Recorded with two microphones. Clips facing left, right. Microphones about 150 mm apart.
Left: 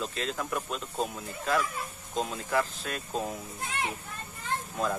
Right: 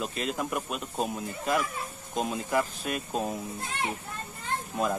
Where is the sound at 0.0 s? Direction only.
15° right (ahead or behind).